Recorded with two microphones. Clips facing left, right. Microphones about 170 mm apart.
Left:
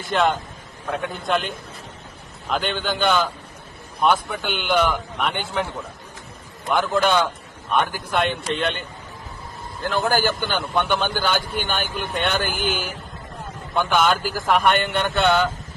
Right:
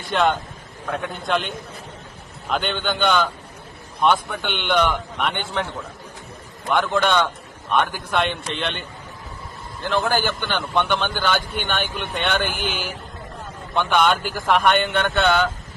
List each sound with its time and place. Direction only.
0.0 s a man's voice: centre (ahead or behind)
6.7 s a man's voice: centre (ahead or behind)
9.8 s a man's voice: centre (ahead or behind)